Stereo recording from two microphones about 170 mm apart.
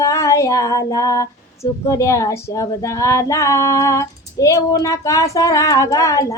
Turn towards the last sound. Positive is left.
turn(degrees=20)  # may be behind; listen again after turning